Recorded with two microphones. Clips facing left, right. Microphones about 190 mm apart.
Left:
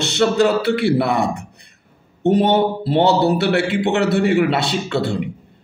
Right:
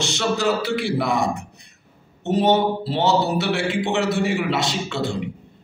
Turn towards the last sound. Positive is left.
turn(degrees=60)  # may be behind; listen again after turning